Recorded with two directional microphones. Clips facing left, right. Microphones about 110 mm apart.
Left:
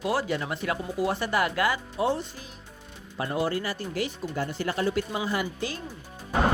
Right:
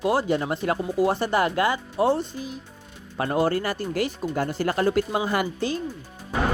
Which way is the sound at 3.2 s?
50° right (ahead or behind).